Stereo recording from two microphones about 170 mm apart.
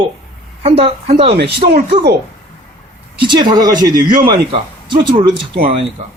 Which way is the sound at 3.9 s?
55° right (ahead or behind).